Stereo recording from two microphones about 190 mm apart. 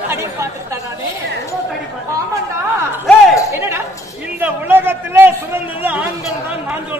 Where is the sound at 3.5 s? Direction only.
15° right (ahead or behind).